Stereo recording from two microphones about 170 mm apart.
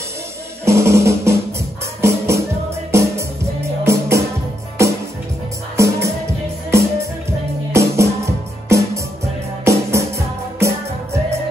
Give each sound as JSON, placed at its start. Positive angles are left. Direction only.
{"t": 0.7, "sound": "drum", "side_deg": -15}
{"t": 2.0, "sound": "music", "side_deg": -15}
{"t": 5.8, "sound": "music", "side_deg": -15}